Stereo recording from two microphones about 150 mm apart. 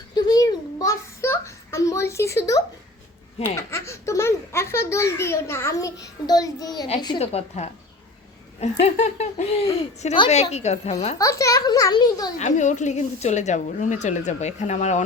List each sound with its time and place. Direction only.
0.1 s a sound: 25° left (ahead or behind)
3.4 s a child's voice: 15° left (ahead or behind)
7.2 s speech: 45° left (ahead or behind)
11.2 s a child's voice: 20° left (ahead or behind)
12.4 s speech: 55° left (ahead or behind)